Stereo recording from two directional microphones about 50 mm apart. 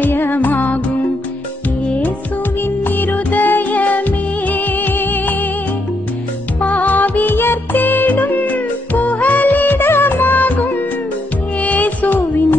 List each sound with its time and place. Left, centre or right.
0.0 s music: left
2.6 s music: left
6.7 s music: left
7.2 s music: left
11.6 s music: left